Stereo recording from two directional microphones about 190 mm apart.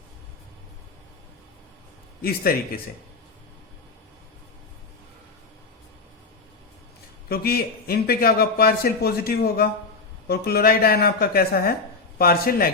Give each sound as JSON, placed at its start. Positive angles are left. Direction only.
{"t": 7.3, "sound": "a man's voice", "side_deg": 55}